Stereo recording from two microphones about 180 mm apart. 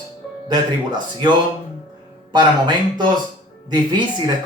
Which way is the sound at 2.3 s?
25° right (ahead or behind).